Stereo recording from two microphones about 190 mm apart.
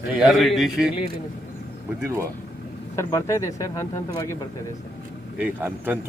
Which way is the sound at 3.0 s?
15° left (ahead or behind).